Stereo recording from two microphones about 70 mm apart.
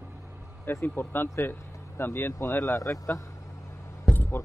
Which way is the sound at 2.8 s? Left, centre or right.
Left.